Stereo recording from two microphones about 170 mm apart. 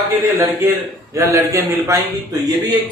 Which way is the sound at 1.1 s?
15° right (ahead or behind).